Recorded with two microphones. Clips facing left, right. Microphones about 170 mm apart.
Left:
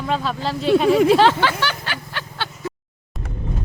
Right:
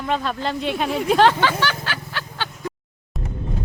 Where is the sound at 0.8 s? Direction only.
90° left.